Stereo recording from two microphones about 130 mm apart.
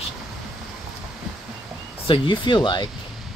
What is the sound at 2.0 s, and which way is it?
Speech, 40° left (ahead or behind).